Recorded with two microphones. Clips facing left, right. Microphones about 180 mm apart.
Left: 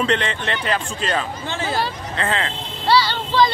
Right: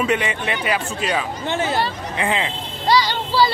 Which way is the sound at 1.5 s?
20° right (ahead or behind).